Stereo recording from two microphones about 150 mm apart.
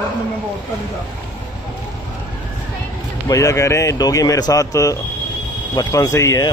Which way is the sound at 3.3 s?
20° left (ahead or behind).